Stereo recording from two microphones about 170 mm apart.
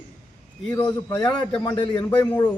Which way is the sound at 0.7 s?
20° left (ahead or behind).